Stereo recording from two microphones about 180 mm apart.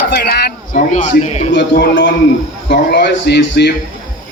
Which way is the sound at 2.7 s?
65° left (ahead or behind).